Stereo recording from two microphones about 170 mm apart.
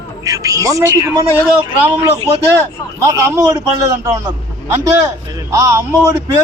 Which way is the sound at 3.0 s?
15° right (ahead or behind).